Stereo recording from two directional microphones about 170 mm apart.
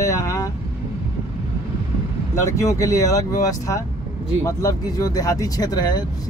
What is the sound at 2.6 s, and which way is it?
Speech, 20° left (ahead or behind).